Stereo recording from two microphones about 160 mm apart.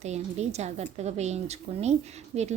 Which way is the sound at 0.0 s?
45° right (ahead or behind).